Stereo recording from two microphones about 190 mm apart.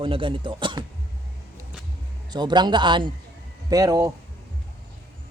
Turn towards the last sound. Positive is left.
turn(degrees=-20)  # may be behind; listen again after turning